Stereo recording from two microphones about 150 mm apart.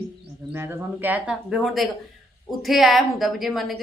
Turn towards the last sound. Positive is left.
turn(degrees=0)  # may be behind; listen again after turning